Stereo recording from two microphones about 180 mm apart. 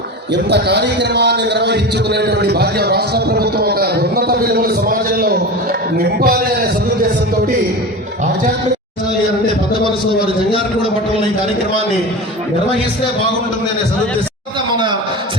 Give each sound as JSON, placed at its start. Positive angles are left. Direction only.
{"t": 0.5, "sound": "a man's voice", "side_deg": -70}